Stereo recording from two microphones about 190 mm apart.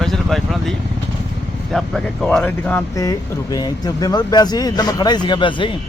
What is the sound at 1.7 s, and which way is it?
Speech, centre (ahead or behind).